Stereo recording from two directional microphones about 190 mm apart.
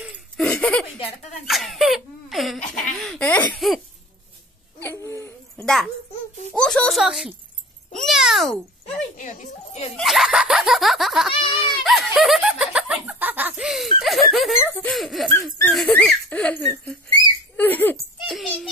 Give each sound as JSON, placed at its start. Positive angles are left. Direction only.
{"t": 0.0, "sound": "laughter", "side_deg": -5}
{"t": 0.5, "sound": "a sound", "side_deg": 5}
{"t": 1.5, "sound": "speech", "side_deg": 0}
{"t": 4.7, "sound": "a sound", "side_deg": 15}
{"t": 6.5, "sound": "a child's voice", "side_deg": 5}
{"t": 8.9, "sound": "speech", "side_deg": 40}
{"t": 9.9, "sound": "laughter", "side_deg": 0}
{"t": 14.6, "sound": "speech", "side_deg": 10}
{"t": 15.6, "sound": "a sound", "side_deg": 5}
{"t": 18.2, "sound": "a child's voice", "side_deg": 0}